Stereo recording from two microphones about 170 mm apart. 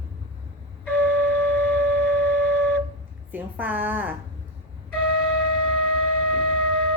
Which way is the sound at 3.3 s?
10° right (ahead or behind).